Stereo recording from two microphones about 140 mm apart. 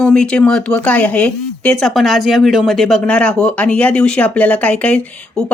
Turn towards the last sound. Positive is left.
turn(degrees=5)  # may be behind; listen again after turning